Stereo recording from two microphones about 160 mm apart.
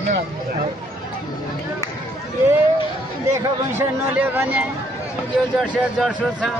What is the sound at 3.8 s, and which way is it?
Speech, 10° right (ahead or behind).